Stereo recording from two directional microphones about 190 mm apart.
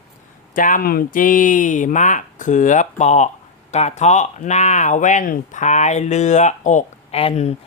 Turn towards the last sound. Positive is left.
turn(degrees=35)  # may be behind; listen again after turning